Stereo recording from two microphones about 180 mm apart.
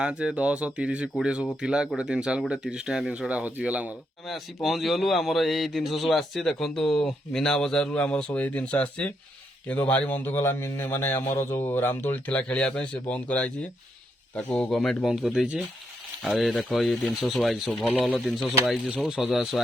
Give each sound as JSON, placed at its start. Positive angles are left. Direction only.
{"t": 0.0, "sound": "a man's voice", "side_deg": -5}